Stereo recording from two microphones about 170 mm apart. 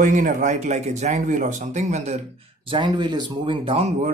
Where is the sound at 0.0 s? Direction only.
50° right (ahead or behind).